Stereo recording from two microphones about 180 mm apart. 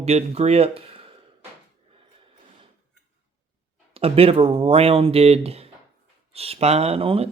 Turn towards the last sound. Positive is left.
turn(degrees=-30)  # may be behind; listen again after turning